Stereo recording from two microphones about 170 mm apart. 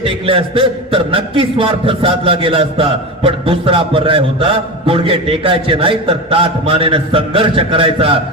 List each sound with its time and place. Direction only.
0.0 s a man's voice: 30° right (ahead or behind)